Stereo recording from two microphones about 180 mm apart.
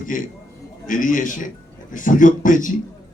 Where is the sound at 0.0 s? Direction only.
45° left (ahead or behind).